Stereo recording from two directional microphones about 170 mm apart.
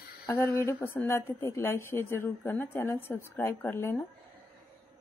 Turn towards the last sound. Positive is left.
turn(degrees=15)  # may be behind; listen again after turning